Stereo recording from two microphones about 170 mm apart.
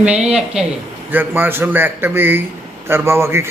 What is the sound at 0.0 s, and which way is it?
A man's voice, 5° right (ahead or behind).